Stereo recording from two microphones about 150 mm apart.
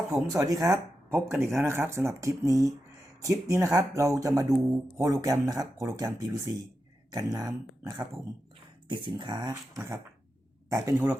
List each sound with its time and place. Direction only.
0.3 s speech: 25° right (ahead or behind)